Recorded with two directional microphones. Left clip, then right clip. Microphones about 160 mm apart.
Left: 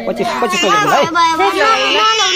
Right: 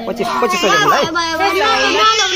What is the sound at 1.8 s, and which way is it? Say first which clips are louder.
Speech: even; 30° left (ahead or behind).